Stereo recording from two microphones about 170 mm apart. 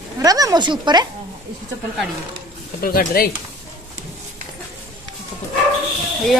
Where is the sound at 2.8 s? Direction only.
60° left (ahead or behind).